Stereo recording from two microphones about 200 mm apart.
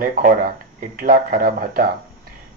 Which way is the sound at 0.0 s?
40° right (ahead or behind).